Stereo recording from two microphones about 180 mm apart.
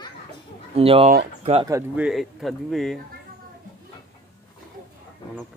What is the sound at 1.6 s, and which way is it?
Speech, 20° right (ahead or behind).